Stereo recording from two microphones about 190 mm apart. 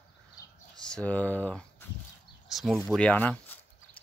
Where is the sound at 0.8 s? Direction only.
5° left (ahead or behind).